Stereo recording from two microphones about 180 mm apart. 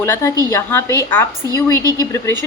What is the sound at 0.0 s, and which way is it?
A woman's voice, 15° left (ahead or behind).